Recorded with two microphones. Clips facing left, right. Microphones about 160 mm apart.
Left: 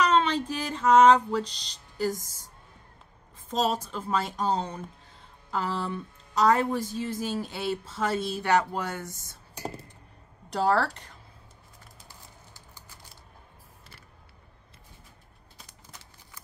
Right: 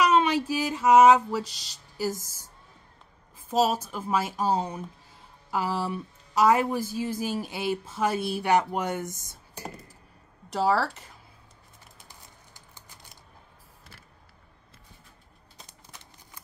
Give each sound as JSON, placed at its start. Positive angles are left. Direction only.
{"t": 0.0, "sound": "a woman's voice", "side_deg": -10}
{"t": 3.4, "sound": "a woman's voice", "side_deg": -10}
{"t": 10.5, "sound": "speech", "side_deg": 0}
{"t": 12.0, "sound": "typing", "side_deg": -20}